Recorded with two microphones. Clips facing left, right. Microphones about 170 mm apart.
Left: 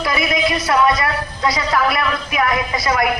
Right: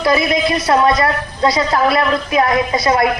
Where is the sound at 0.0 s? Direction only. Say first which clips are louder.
Right 4 dB; 30° right (ahead or behind).